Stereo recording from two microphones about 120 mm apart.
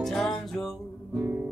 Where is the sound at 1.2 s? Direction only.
15° right (ahead or behind).